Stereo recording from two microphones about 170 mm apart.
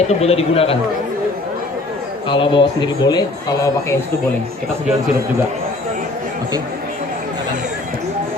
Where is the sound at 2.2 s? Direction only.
30° left (ahead or behind).